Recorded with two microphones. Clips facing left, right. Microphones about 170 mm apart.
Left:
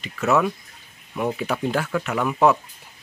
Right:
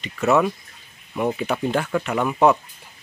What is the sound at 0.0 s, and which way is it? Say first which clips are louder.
Speech: right 2 dB; centre (ahead or behind).